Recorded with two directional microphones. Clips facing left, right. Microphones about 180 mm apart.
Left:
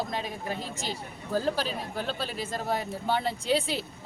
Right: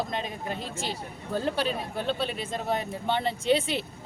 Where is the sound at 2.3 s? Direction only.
5° left (ahead or behind).